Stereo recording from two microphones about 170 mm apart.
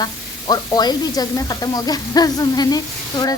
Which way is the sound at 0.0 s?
25° left (ahead or behind).